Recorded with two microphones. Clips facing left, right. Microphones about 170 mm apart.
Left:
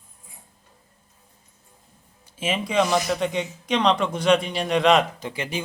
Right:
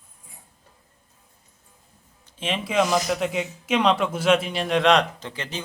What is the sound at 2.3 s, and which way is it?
Speech, 5° left (ahead or behind).